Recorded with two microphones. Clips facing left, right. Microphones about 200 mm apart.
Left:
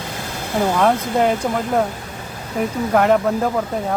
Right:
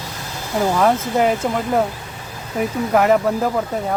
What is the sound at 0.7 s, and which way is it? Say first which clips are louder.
Speech: right 1 dB; centre (ahead or behind).